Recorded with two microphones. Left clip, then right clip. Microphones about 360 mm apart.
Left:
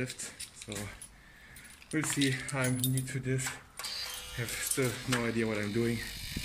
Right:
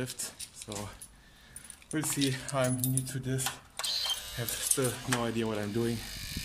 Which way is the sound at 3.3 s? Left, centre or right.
Right.